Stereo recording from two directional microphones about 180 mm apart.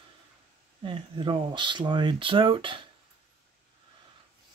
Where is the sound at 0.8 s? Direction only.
25° right (ahead or behind).